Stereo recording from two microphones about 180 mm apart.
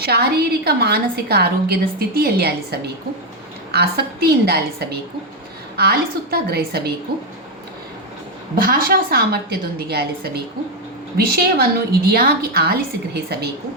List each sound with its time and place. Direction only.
0.0 s a woman's voice: 60° right (ahead or behind)
8.5 s a woman's voice: 55° right (ahead or behind)